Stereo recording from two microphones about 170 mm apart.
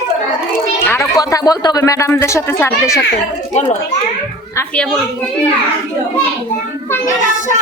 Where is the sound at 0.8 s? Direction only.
15° left (ahead or behind).